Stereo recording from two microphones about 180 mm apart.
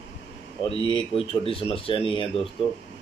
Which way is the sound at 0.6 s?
30° left (ahead or behind).